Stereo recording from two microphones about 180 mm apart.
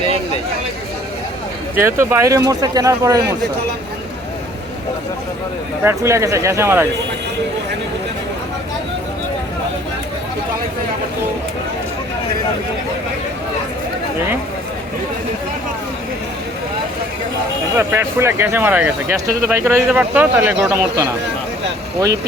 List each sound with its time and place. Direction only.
1.7 s speech: 15° right (ahead or behind)
5.8 s speech: 15° right (ahead or behind)
17.7 s speech: 15° right (ahead or behind)